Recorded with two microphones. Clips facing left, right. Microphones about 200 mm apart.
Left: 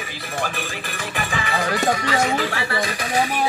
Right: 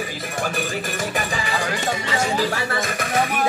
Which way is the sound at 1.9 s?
25° right (ahead or behind).